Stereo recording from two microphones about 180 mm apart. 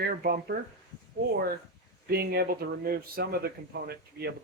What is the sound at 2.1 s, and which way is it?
Speech, 60° right (ahead or behind).